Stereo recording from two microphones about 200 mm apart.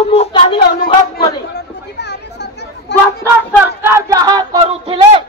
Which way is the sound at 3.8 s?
15° right (ahead or behind).